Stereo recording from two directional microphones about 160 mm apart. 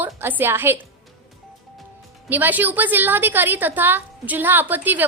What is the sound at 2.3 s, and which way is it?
A woman's voice, 10° right (ahead or behind).